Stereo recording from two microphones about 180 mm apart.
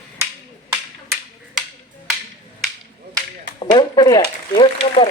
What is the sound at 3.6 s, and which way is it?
Speech, 25° left (ahead or behind).